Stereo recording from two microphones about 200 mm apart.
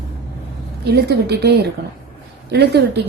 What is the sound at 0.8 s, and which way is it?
Speech, 55° right (ahead or behind).